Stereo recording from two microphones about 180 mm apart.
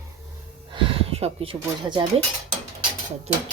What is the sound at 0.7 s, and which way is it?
Speech, 30° right (ahead or behind).